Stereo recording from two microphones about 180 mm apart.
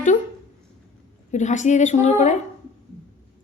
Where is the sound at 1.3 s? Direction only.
40° left (ahead or behind).